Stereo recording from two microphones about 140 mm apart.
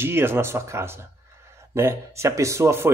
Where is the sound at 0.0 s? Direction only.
15° right (ahead or behind).